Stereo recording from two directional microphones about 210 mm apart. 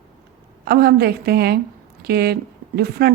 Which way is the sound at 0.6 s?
45° right (ahead or behind).